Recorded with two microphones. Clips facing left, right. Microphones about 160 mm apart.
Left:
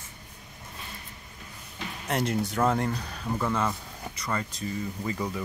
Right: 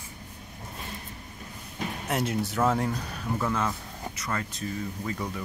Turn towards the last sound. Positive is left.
turn(degrees=0)  # may be behind; listen again after turning